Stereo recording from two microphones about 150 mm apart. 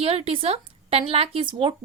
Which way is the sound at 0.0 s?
40° right (ahead or behind).